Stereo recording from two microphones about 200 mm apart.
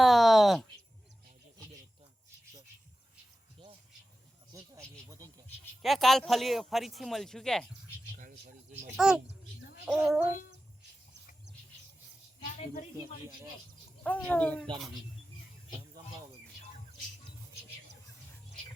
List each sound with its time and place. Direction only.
0.0 s a sound: centre (ahead or behind)
4.5 s snake: 15° right (ahead or behind)
5.8 s speech: centre (ahead or behind)
8.2 s a sound: 40° right (ahead or behind)
9.0 s a child's voice: 5° right (ahead or behind)
14.0 s speech: 5° left (ahead or behind)